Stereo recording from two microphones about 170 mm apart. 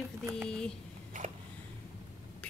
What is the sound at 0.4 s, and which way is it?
Speech, 5° left (ahead or behind).